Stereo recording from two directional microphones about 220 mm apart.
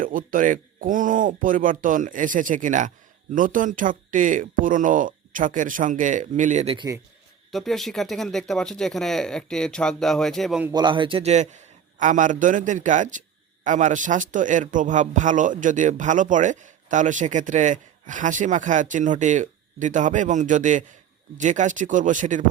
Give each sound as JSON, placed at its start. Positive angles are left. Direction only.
{"t": 0.0, "sound": "speech", "side_deg": -40}
{"t": 7.5, "sound": "speech", "side_deg": 0}
{"t": 10.7, "sound": "speech", "side_deg": -20}